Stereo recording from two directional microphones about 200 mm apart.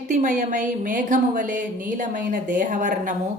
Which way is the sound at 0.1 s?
40° right (ahead or behind).